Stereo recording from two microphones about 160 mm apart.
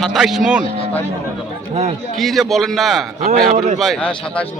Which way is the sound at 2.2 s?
Centre (ahead or behind).